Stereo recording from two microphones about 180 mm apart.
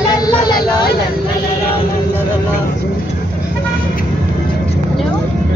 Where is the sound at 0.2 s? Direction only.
25° left (ahead or behind).